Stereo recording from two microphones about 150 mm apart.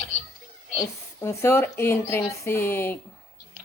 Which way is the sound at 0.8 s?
15° left (ahead or behind).